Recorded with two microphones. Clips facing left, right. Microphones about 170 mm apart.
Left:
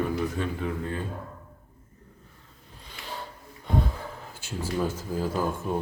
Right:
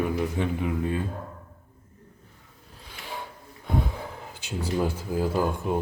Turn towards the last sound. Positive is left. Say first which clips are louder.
# right 2 dB
turn(degrees=-10)  # may be behind; listen again after turning